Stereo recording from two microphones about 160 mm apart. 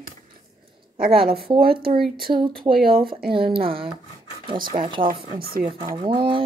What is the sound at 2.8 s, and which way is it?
Speech, 65° right (ahead or behind).